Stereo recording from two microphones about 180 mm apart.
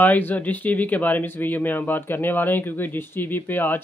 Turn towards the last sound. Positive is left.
turn(degrees=10)  # may be behind; listen again after turning